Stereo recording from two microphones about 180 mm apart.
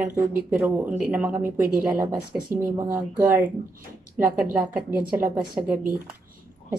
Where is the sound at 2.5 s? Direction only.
50° right (ahead or behind).